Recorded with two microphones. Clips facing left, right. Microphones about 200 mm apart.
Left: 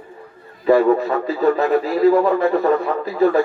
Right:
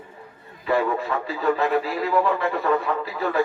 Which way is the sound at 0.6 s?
40° left (ahead or behind).